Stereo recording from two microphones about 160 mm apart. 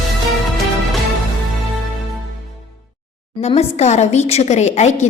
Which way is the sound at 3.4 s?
40° left (ahead or behind).